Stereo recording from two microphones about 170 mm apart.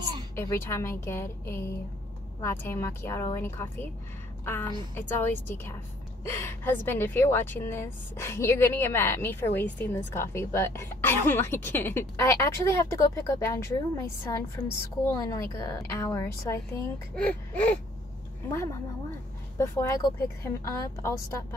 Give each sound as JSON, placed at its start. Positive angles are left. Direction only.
{"t": 0.4, "sound": "a woman's voice", "side_deg": 15}
{"t": 4.9, "sound": "a woman's voice", "side_deg": 15}